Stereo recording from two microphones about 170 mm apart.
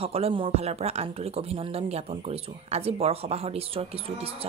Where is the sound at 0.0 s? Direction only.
35° right (ahead or behind).